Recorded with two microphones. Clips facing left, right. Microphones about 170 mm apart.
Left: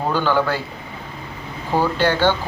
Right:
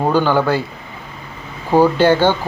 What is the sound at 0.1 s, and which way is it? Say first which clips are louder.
Speech: right 3 dB; 45° right (ahead or behind).